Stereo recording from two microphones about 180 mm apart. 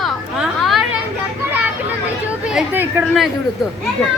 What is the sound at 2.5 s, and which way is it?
Speech, 5° right (ahead or behind).